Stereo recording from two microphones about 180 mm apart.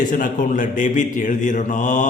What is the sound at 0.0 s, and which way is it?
A man's voice, 45° left (ahead or behind).